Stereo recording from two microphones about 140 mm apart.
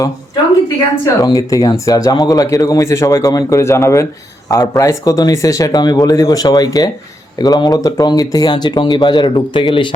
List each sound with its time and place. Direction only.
1.0 s speech: 25° left (ahead or behind)